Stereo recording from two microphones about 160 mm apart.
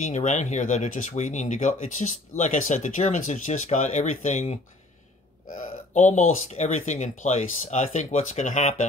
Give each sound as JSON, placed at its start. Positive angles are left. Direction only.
{"t": 0.0, "sound": "speech", "side_deg": 45}